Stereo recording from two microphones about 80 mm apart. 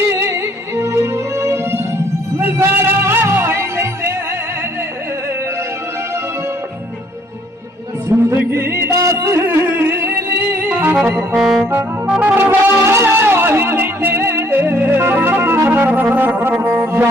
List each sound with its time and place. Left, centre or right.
0.1 s music: right
8.1 s music: right
11.3 s brass instrument: centre
12.0 s music: centre
12.3 s music: right